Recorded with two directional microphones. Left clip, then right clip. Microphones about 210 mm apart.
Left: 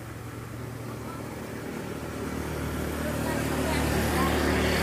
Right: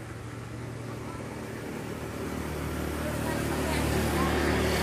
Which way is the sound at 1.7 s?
45° left (ahead or behind).